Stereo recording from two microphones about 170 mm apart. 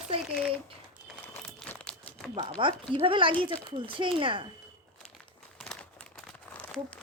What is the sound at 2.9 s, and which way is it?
Speech, 30° right (ahead or behind).